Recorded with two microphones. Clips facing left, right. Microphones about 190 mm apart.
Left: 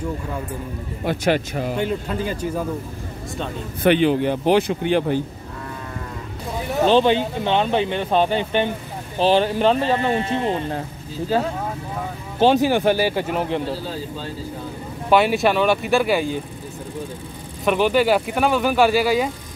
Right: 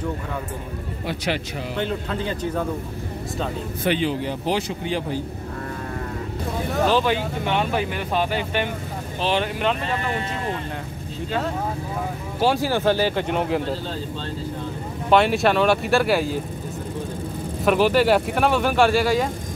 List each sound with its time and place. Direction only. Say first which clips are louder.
1.0 s a man's voice: left 7 dB; 50° left (ahead or behind)
1.8 s speech: right 1 dB; 10° left (ahead or behind)
3.8 s speech: left 7 dB; 60° left (ahead or behind)
6.8 s speech: left 5 dB; 25° left (ahead or behind)
12.4 s speech: left 5 dB; 20° left (ahead or behind); by 13.7 s centre (ahead or behind)
15.0 s speech: left 1 dB; 5° left (ahead or behind)
17.6 s speech: even; centre (ahead or behind)